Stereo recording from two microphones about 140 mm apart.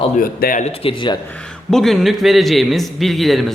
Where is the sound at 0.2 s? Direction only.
85° left.